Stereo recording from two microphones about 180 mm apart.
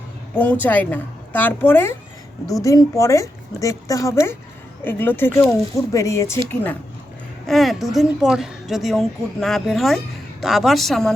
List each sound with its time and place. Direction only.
0.6 s a woman's voice: 10° left (ahead or behind)